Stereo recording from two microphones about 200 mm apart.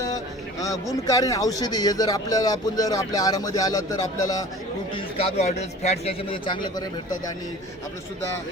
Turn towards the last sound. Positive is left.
turn(degrees=20)  # may be behind; listen again after turning